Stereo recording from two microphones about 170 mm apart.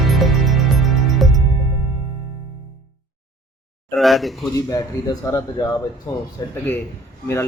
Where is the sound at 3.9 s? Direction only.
Centre (ahead or behind).